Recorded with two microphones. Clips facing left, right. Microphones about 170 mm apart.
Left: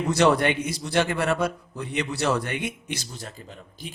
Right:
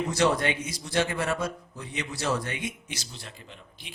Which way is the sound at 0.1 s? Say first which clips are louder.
Left 6 dB; 65° left (ahead or behind).